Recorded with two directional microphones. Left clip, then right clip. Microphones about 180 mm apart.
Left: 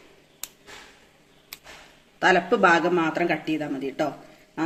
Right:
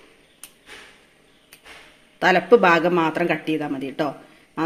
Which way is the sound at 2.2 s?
40° right (ahead or behind).